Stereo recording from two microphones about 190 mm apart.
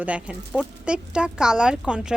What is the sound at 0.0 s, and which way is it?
Speech, 5° right (ahead or behind).